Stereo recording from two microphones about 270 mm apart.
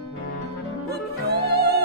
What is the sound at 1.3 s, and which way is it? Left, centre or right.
Music, right.